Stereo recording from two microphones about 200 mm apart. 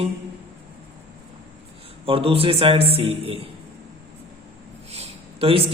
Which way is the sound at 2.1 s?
25° right (ahead or behind).